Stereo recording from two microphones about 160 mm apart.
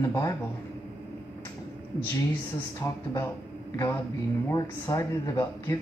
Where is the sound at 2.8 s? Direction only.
20° left (ahead or behind).